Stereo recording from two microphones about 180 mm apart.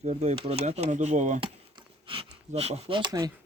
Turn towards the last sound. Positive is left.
turn(degrees=-20)  # may be behind; listen again after turning